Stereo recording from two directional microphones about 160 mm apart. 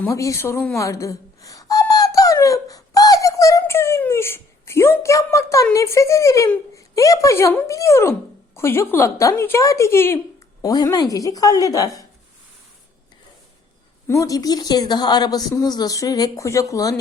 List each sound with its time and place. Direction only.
0.0 s a sound: 20° left (ahead or behind)
5.7 s a woman's voice: 20° left (ahead or behind)
14.1 s a woman's voice: 20° left (ahead or behind)